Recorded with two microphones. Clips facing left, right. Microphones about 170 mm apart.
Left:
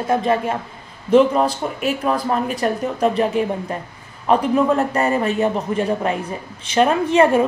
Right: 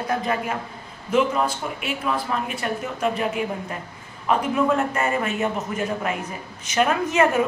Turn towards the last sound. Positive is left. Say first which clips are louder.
# left 5 dB
turn(degrees=30)  # may be behind; listen again after turning